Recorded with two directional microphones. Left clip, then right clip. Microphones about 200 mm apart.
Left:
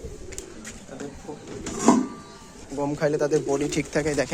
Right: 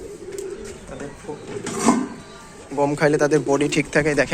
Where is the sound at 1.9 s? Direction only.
Centre (ahead or behind).